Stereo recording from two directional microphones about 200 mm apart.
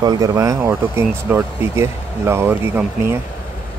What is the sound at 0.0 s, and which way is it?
Speech, 20° right (ahead or behind).